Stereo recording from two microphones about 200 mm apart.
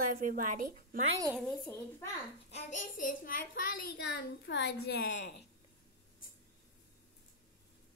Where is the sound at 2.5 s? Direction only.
40° left (ahead or behind).